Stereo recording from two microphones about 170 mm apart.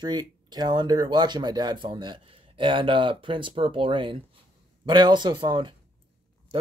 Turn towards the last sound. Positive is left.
turn(degrees=-30)  # may be behind; listen again after turning